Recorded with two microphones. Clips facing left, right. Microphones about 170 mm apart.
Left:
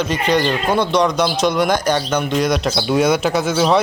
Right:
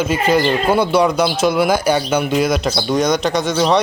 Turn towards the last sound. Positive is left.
turn(degrees=5)  # may be behind; listen again after turning